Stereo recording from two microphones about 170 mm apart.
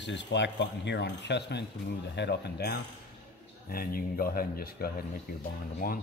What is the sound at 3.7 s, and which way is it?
Speech, 60° left (ahead or behind).